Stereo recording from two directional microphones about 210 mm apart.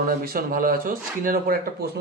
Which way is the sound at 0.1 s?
40° right (ahead or behind).